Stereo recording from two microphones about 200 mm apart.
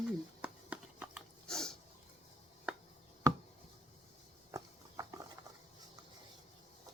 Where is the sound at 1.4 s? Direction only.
5° left (ahead or behind).